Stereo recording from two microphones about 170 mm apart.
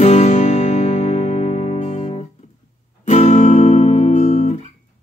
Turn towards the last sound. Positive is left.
turn(degrees=40)  # may be behind; listen again after turning